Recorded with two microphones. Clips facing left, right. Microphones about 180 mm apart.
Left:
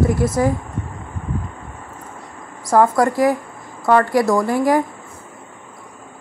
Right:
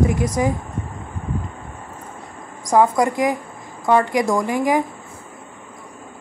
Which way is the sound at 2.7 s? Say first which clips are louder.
Left 1 dB; 15° right (ahead or behind).